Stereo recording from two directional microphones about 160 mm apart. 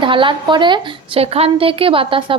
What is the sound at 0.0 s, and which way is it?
A woman's voice, 30° right (ahead or behind).